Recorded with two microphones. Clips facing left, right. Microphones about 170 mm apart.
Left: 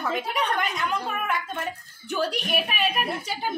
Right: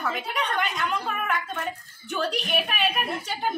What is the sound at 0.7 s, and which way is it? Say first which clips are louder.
A woman's voice: even; 10° left (ahead or behind).